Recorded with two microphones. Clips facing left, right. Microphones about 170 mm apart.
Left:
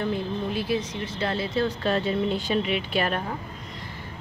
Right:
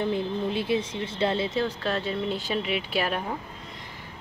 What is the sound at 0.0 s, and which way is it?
Speech, 20° right (ahead or behind).